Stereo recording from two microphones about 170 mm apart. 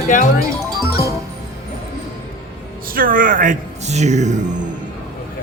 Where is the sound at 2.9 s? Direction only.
55° right (ahead or behind).